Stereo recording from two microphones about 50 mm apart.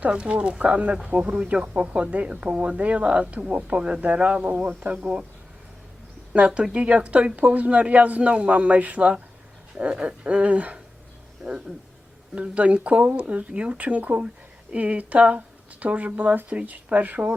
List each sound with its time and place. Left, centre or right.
0.0 s speech: right
1.3 s speech: right
4.8 s speech: right
6.3 s speech: right
11.4 s speech: centre
12.3 s speech: right
16.5 s speech: right